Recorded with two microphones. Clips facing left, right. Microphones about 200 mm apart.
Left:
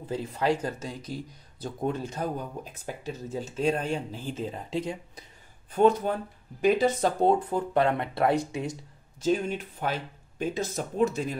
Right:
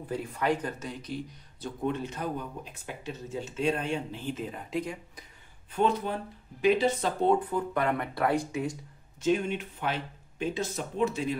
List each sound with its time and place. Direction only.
0.1 s speech: 30° left (ahead or behind)
5.7 s speech: 45° left (ahead or behind)
7.5 s speech: 30° left (ahead or behind)
9.2 s speech: 35° left (ahead or behind)